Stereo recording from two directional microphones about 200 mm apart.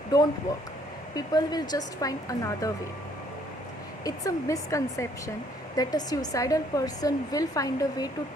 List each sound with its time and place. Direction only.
1.1 s a woman's voice: 20° left (ahead or behind)
4.0 s a woman's voice: 15° left (ahead or behind)